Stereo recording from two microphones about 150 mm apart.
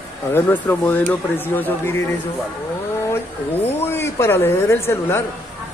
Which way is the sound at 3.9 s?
15° left (ahead or behind).